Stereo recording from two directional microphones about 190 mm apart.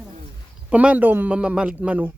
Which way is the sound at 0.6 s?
5° right (ahead or behind).